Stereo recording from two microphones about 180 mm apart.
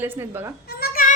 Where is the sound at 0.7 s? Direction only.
60° left (ahead or behind).